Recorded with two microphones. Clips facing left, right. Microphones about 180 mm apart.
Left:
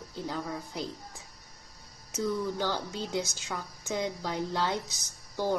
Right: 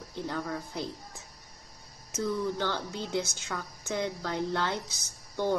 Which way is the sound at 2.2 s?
10° left (ahead or behind).